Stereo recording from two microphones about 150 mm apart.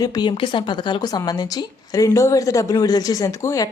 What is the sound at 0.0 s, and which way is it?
Speech, 30° left (ahead or behind).